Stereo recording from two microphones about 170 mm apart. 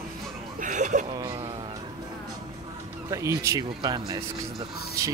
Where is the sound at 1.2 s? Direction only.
20° right (ahead or behind).